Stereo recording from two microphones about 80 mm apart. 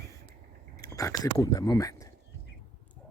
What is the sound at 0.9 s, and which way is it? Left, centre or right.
Speech, left.